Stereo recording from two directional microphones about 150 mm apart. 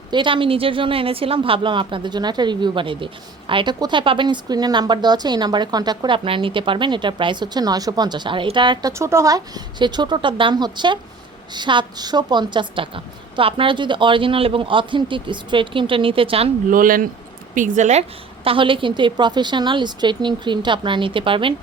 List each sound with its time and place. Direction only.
0.1 s a woman's voice: 35° right (ahead or behind)
8.9 s a woman's voice: 20° right (ahead or behind); by 16.5 s 40° right (ahead or behind)
16.6 s speech: 65° right (ahead or behind)
17.5 s a woman's voice: 55° right (ahead or behind)
18.4 s a woman's voice: 35° right (ahead or behind)